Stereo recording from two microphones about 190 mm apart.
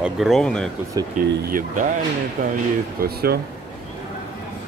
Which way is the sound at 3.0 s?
55° right (ahead or behind).